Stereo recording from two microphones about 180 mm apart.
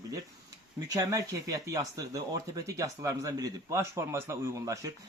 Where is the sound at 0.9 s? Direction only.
20° right (ahead or behind).